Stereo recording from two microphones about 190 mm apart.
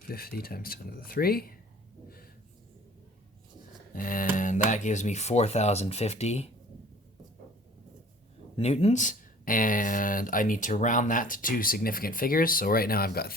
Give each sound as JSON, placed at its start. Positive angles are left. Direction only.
{"t": 0.1, "sound": "speech", "side_deg": 55}
{"t": 3.9, "sound": "speech", "side_deg": 45}
{"t": 8.5, "sound": "speech", "side_deg": 30}